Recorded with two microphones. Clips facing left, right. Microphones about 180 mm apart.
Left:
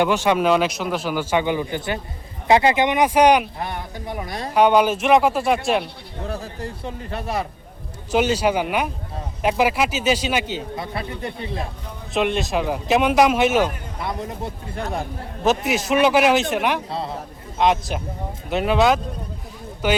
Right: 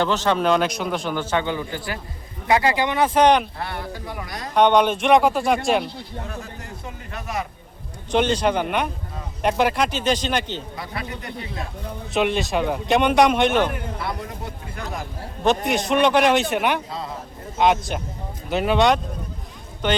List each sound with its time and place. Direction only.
0.0 s a man's voice: 15° left (ahead or behind)
4.5 s a man's voice: 5° left (ahead or behind)
6.2 s a man's voice: 35° left (ahead or behind)
8.1 s a man's voice: 5° left (ahead or behind)
10.8 s speech: 30° left (ahead or behind)
12.1 s a man's voice: centre (ahead or behind)
14.0 s speech: 20° left (ahead or behind)
15.4 s a man's voice: 5° left (ahead or behind)